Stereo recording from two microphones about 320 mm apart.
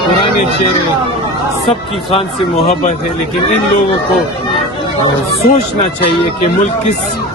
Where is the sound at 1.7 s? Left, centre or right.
Centre.